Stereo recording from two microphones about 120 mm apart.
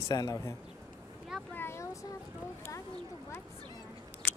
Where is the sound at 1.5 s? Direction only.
20° left (ahead or behind).